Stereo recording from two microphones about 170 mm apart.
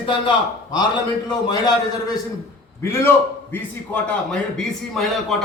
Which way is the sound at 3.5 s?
5° left (ahead or behind).